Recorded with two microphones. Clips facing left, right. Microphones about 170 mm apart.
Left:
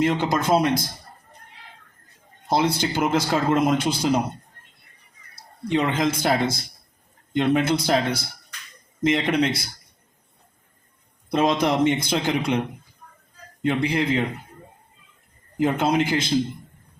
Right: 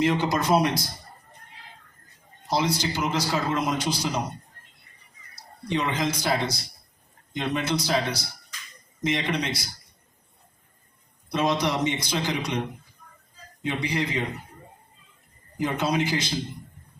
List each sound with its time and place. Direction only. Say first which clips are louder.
0.0 s a man's voice: left 2 dB; 50° left (ahead or behind)
2.5 s a man's voice: left 4 dB; 55° left (ahead or behind)
5.3 s a man's voice: left 5 dB; 50° left (ahead or behind)
11.3 s a man's voice: left 4 dB; 55° left (ahead or behind)
13.6 s a man's voice: left 5 dB; 55° left (ahead or behind)
15.5 s a man's voice: left 5 dB; 55° left (ahead or behind)